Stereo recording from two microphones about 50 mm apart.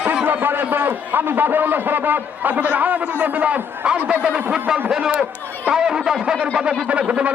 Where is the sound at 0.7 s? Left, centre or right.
Right.